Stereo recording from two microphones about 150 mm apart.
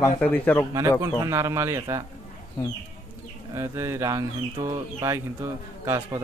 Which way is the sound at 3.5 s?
20° right (ahead or behind).